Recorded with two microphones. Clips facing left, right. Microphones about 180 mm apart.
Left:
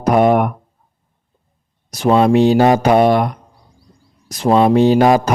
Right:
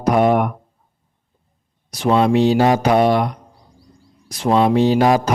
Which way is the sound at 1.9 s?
45° left (ahead or behind).